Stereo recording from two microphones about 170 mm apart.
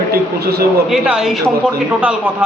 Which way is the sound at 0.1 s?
65° right (ahead or behind).